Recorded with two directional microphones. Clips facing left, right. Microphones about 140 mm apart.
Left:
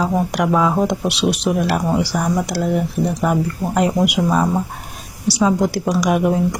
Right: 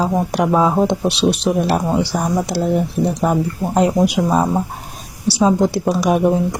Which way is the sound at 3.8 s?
25° right (ahead or behind).